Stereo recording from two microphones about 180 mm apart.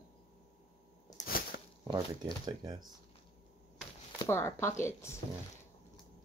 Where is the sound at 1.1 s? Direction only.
55° left (ahead or behind).